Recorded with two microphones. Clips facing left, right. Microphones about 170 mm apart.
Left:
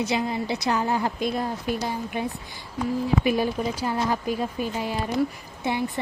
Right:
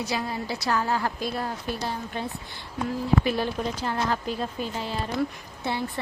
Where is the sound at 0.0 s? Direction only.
20° left (ahead or behind).